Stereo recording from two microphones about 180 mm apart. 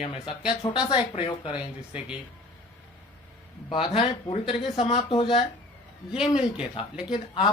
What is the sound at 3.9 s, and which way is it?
Speech, 35° left (ahead or behind).